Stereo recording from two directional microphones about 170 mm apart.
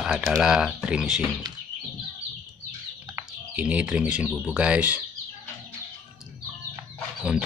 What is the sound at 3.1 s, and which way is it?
Speech, 10° right (ahead or behind).